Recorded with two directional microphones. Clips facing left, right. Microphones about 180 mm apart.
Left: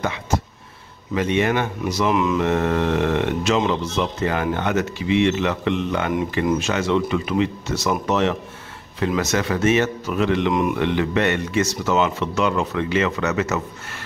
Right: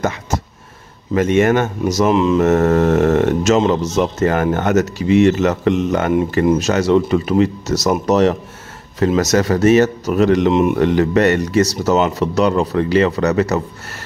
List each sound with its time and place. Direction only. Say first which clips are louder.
0.0 s a sound: right 3 dB; 45° right (ahead or behind)
1.1 s speech: right 6 dB; 45° right (ahead or behind)
2.0 s mantra: right 5 dB; 30° right (ahead or behind)
2.4 s speech: right 7 dB; 45° right (ahead or behind)
10.5 s mantra: right 6 dB; 25° right (ahead or behind)
10.8 s speech: right 7 dB; 40° right (ahead or behind)